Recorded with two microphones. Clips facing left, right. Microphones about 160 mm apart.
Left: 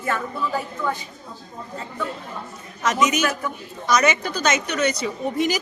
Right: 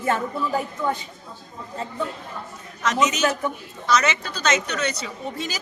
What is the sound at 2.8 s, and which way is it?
A woman's voice, 10° left (ahead or behind).